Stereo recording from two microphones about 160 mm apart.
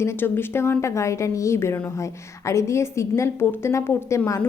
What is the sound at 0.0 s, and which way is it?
A woman's voice, 15° left (ahead or behind).